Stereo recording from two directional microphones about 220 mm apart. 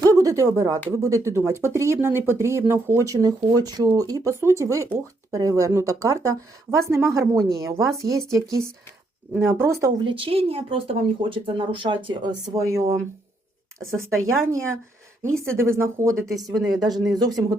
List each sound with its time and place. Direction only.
0.0 s speech: 15° right (ahead or behind)
14.1 s speech: 15° right (ahead or behind)